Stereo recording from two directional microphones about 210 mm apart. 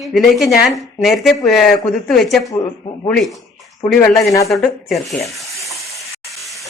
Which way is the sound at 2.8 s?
25° left (ahead or behind).